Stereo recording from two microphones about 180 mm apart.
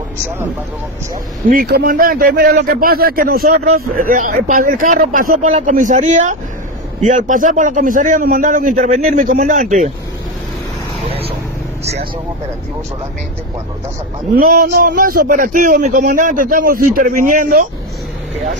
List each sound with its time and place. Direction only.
1.5 s a man's voice: 50° right (ahead or behind)
11.1 s vehicle: 30° right (ahead or behind)
14.3 s a man's voice: 55° right (ahead or behind)